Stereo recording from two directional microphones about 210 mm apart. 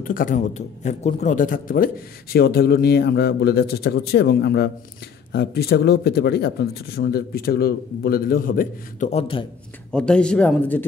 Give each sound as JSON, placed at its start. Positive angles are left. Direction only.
{"t": 0.0, "sound": "a man's voice", "side_deg": 40}
{"t": 9.9, "sound": "a man's voice", "side_deg": 5}